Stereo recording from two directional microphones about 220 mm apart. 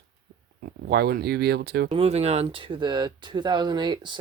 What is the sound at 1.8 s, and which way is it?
Speech, 25° right (ahead or behind).